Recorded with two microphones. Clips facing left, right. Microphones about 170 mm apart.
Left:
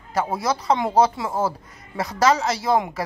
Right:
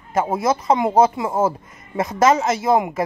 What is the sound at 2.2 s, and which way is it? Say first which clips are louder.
Speech: right 3 dB; 25° right (ahead or behind).